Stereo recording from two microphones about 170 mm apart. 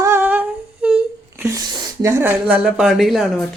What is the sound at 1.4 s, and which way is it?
Speech, 20° right (ahead or behind).